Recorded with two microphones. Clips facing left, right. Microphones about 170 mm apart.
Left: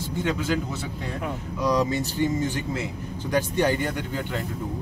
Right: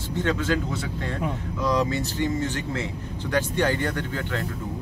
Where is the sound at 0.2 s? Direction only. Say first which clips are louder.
Right 1 dB; 10° left (ahead or behind).